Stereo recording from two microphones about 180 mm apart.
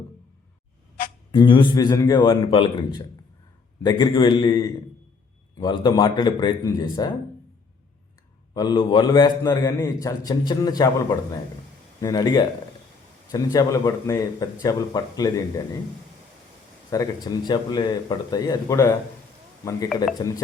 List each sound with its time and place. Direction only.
1.3 s a man's voice: 25° left (ahead or behind)
8.5 s a man's voice: 25° left (ahead or behind)
16.9 s a man's voice: 20° left (ahead or behind)
20.1 s a man's voice: 20° left (ahead or behind)